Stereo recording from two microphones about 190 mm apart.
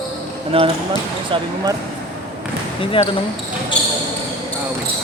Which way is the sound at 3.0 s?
25° left (ahead or behind).